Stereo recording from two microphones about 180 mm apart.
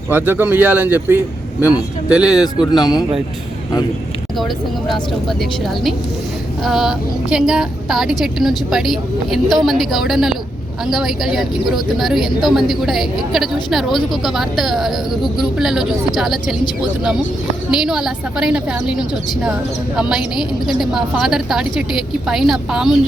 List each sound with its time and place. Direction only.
0.1 s speech: 10° right (ahead or behind)
2.3 s speech: 20° left (ahead or behind)
5.4 s a woman's voice: centre (ahead or behind)
17.7 s a woman's voice: 5° right (ahead or behind)